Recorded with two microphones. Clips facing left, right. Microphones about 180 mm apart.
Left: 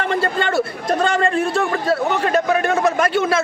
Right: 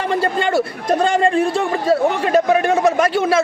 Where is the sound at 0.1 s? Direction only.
10° right (ahead or behind).